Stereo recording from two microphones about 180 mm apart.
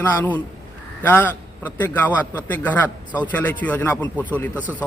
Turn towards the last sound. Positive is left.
turn(degrees=10)  # may be behind; listen again after turning